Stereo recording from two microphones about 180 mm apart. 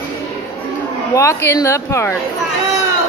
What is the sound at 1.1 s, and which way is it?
A woman's voice, 15° left (ahead or behind).